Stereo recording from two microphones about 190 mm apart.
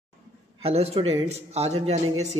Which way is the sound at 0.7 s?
35° right (ahead or behind).